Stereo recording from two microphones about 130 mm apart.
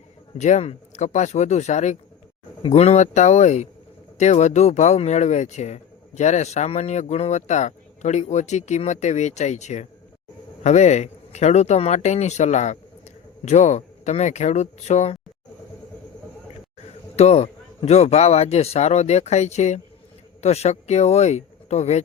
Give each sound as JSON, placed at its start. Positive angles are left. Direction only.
{"t": 0.3, "sound": "speech", "side_deg": 65}
{"t": 2.6, "sound": "speech", "side_deg": 55}
{"t": 17.2, "sound": "speech", "side_deg": 55}